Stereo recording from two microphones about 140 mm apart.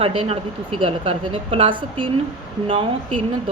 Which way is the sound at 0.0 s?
40° right (ahead or behind).